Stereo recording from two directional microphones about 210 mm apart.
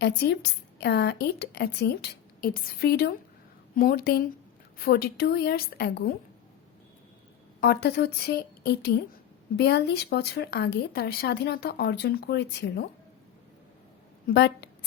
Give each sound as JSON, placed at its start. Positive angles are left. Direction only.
{"t": 0.0, "sound": "speech", "side_deg": 50}
{"t": 7.6, "sound": "speech", "side_deg": 50}
{"t": 14.3, "sound": "speech", "side_deg": 50}